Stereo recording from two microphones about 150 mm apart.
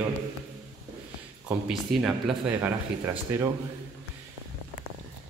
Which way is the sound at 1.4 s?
5° right (ahead or behind).